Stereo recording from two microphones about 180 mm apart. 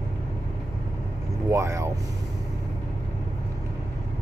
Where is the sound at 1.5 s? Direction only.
15° right (ahead or behind).